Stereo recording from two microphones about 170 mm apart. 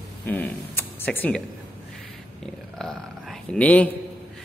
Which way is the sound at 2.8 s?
Centre (ahead or behind).